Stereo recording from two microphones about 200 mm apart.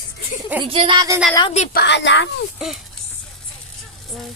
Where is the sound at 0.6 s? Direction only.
25° right (ahead or behind).